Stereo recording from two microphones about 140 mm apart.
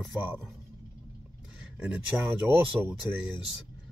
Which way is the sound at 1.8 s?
10° right (ahead or behind).